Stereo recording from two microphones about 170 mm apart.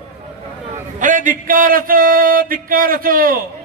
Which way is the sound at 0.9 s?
50° right (ahead or behind).